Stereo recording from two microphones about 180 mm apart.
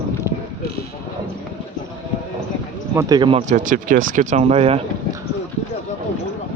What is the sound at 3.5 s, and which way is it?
Speech, 45° right (ahead or behind).